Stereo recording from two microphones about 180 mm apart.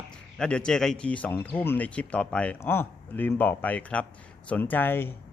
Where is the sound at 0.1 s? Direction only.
5° left (ahead or behind).